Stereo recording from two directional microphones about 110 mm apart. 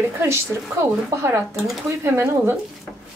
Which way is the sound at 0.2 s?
25° right (ahead or behind).